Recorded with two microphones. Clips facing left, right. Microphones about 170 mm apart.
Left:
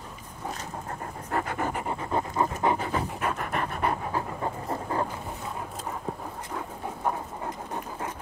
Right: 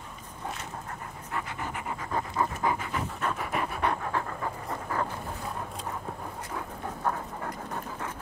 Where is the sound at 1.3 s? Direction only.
50° left (ahead or behind); by 3.0 s 30° left (ahead or behind).